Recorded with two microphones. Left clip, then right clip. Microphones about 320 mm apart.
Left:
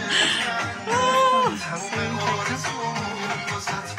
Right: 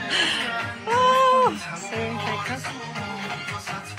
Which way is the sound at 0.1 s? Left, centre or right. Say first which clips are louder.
Left 2 dB; left.